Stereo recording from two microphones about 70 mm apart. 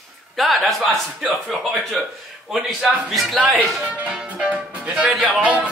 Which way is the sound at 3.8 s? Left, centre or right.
Centre.